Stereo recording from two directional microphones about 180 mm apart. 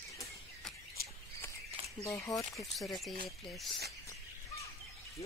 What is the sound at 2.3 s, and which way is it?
Speech, 20° left (ahead or behind).